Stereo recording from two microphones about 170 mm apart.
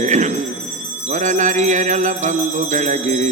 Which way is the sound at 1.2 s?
45° right (ahead or behind).